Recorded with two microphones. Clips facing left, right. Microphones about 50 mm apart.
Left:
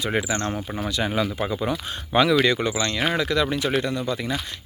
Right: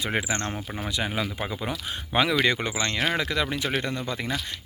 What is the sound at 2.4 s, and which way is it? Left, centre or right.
Speech, right.